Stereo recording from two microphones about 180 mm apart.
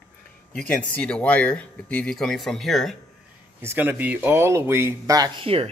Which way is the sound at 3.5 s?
10° right (ahead or behind).